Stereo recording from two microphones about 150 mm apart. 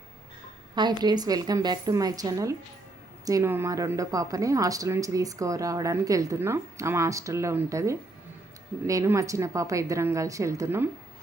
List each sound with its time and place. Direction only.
0.8 s speech: 30° right (ahead or behind)